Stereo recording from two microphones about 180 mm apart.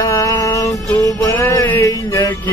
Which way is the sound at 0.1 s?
20° left (ahead or behind).